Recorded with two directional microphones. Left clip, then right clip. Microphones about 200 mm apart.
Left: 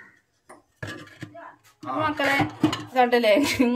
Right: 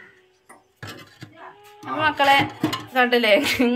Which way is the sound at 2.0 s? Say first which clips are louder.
Right 7 dB; centre (ahead or behind).